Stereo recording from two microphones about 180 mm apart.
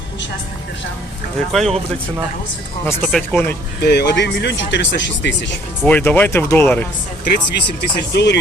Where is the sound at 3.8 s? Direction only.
65° left (ahead or behind).